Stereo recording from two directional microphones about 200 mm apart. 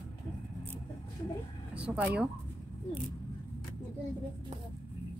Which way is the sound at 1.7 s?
5° right (ahead or behind).